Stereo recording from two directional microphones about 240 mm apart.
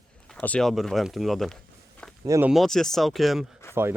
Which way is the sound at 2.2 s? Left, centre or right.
Centre.